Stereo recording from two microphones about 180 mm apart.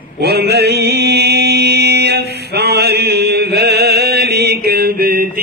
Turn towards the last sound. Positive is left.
turn(degrees=-55)  # may be behind; listen again after turning